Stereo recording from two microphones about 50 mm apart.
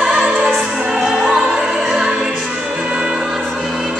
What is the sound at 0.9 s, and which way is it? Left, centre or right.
Opera, centre.